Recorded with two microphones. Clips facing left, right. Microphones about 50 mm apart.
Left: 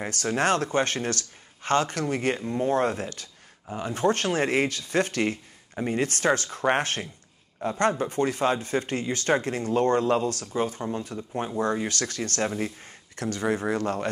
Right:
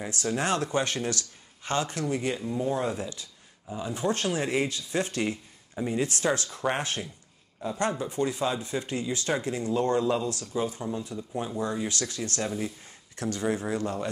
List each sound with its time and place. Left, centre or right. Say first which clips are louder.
0.0 s speech: left 4 dB; left
12.4 s speech: left 4 dB; left
12.8 s speech: left 1 dB; left